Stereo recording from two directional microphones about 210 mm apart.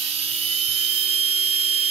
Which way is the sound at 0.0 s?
30° right (ahead or behind).